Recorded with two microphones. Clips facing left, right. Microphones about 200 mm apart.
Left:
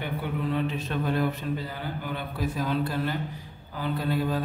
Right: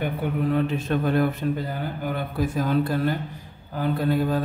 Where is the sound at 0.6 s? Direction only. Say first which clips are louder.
Right 5 dB; 50° right (ahead or behind).